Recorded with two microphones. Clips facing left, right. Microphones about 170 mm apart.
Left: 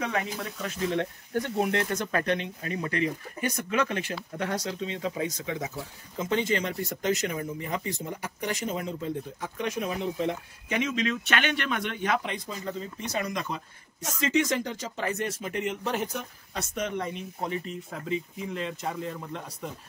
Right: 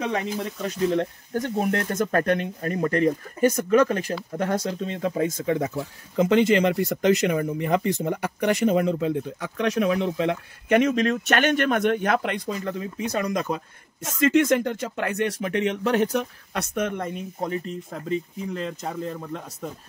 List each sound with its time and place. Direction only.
0.0 s speech: 30° right (ahead or behind); by 5.7 s 50° right (ahead or behind)
6.1 s speech: 75° right (ahead or behind)
10.8 s speech: 50° right (ahead or behind)
13.3 s speech: 45° right (ahead or behind)